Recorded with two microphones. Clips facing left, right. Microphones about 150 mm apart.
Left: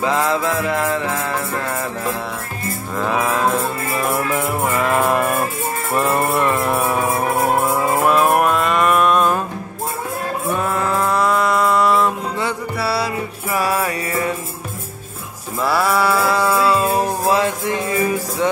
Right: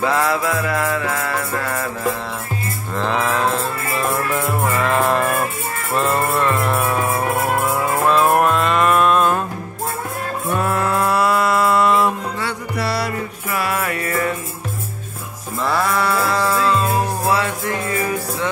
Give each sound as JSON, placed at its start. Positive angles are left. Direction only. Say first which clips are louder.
{"t": 0.0, "sound": "music", "louder": "even", "side_deg": 20}
{"t": 3.0, "sound": "music", "louder": "left 1 dB", "side_deg": 10}
{"t": 10.5, "sound": "livestock", "louder": "right 1 dB", "side_deg": 0}
{"t": 12.7, "sound": "music", "louder": "even", "side_deg": 5}
{"t": 15.7, "sound": "music", "louder": "left 2 dB", "side_deg": 5}